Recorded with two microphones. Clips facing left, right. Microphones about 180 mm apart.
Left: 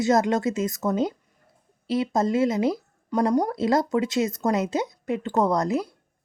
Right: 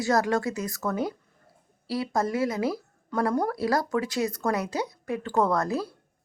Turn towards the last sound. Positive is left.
turn(degrees=20)  # may be behind; listen again after turning